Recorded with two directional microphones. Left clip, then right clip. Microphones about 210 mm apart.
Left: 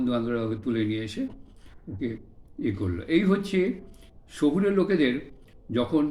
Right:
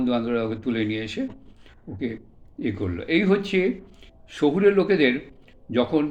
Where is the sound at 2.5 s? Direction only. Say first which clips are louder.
Right 2 dB; 15° left (ahead or behind).